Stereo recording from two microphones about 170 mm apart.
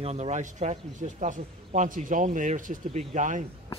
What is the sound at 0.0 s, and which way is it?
Speech, 40° right (ahead or behind).